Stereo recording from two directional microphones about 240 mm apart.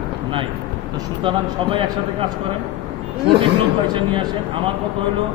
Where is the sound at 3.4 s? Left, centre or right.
Centre.